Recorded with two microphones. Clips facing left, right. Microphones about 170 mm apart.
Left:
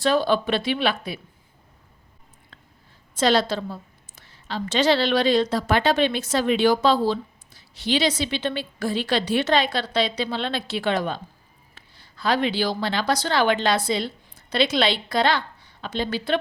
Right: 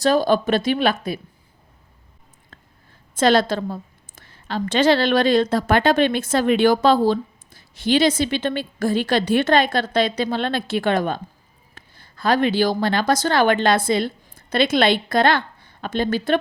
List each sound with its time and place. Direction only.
0.0 s a woman's voice: 40° right (ahead or behind)
2.5 s a sound: 45° right (ahead or behind)
3.2 s a woman's voice: 50° right (ahead or behind)